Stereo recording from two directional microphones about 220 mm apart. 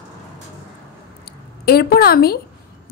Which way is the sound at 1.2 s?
45° left (ahead or behind).